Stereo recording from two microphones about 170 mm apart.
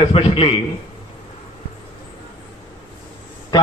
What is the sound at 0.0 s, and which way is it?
Speech, 30° left (ahead or behind).